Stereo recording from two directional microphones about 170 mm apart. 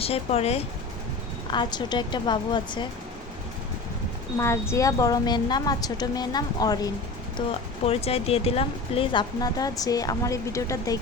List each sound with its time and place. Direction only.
0.0 s speech: 35° left (ahead or behind)
1.5 s speech: 25° left (ahead or behind)
4.4 s speech: 15° left (ahead or behind)
7.9 s speech: 35° left (ahead or behind); by 11.0 s 20° left (ahead or behind)